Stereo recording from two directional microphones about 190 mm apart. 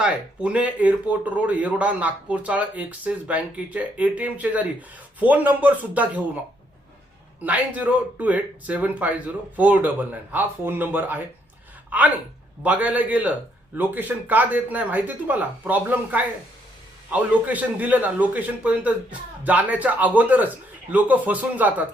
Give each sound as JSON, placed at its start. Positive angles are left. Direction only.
{"t": 0.0, "sound": "speech", "side_deg": -5}
{"t": 7.4, "sound": "speech", "side_deg": -10}